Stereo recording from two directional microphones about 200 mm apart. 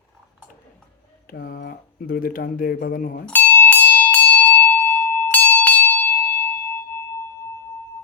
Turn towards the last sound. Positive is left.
turn(degrees=10)  # may be behind; listen again after turning